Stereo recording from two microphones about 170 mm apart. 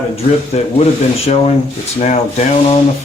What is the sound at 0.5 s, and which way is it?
Speech, 40° left (ahead or behind).